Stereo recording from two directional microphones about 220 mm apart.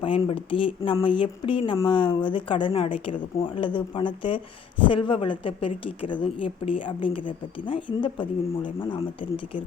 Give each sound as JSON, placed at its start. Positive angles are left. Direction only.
{"t": 0.0, "sound": "a woman's voice", "side_deg": 25}